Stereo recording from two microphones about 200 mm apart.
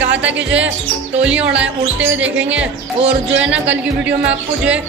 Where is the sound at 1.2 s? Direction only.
5° right (ahead or behind).